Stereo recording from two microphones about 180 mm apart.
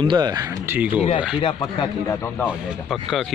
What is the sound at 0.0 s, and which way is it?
Speech, 25° right (ahead or behind).